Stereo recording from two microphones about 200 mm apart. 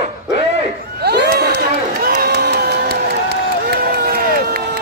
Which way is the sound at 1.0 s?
55° right (ahead or behind).